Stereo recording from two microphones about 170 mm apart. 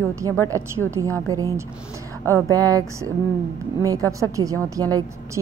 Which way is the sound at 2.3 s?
20° right (ahead or behind).